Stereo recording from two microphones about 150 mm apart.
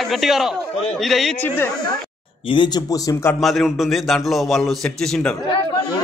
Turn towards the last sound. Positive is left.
turn(degrees=0)  # may be behind; listen again after turning